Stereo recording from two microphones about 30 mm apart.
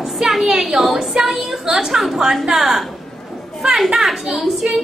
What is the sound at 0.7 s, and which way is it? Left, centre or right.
A woman's voice, centre.